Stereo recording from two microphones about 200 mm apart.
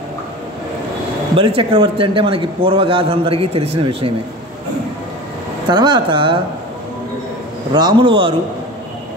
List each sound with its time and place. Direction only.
1.3 s a man's voice: 25° right (ahead or behind)
5.7 s a man's voice: 20° right (ahead or behind)
7.7 s a man's voice: 25° right (ahead or behind)